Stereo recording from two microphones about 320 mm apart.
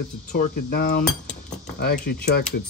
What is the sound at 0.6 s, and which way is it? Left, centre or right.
Speech, left.